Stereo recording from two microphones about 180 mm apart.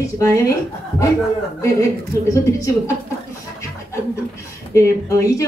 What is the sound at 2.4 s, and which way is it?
Speech, 15° left (ahead or behind).